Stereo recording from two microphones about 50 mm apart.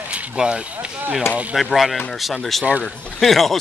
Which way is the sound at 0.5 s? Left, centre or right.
Right.